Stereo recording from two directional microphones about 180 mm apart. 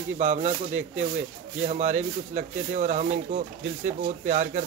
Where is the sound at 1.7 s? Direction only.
40° right (ahead or behind).